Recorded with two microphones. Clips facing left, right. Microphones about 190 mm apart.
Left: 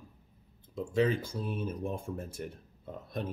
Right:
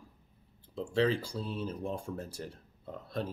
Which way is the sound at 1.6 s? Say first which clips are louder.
Left 1 dB; 20° left (ahead or behind).